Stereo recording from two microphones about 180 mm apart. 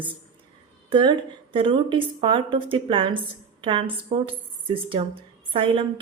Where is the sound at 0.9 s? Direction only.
25° right (ahead or behind).